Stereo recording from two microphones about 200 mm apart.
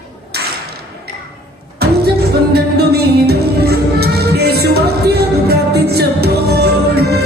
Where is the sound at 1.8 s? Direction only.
55° right (ahead or behind).